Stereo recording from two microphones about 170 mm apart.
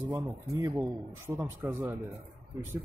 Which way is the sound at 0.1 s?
20° right (ahead or behind).